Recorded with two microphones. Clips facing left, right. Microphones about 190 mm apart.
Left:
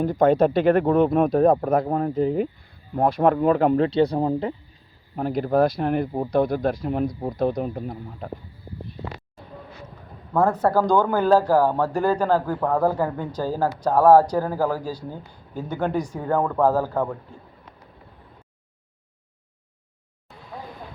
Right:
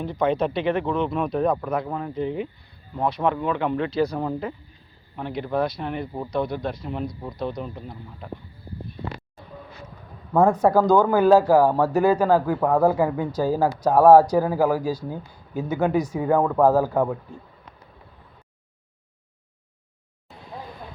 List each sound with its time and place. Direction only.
0.0 s speech: 45° left (ahead or behind); by 4.5 s 30° left (ahead or behind)
5.1 s speech: 40° left (ahead or behind)
10.8 s speech: 5° right (ahead or behind)